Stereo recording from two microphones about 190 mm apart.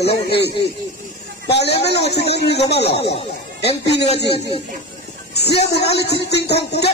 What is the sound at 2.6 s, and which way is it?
Speech, 60° left (ahead or behind).